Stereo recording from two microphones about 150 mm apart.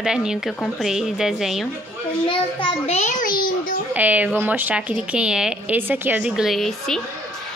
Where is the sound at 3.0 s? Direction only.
55° left (ahead or behind).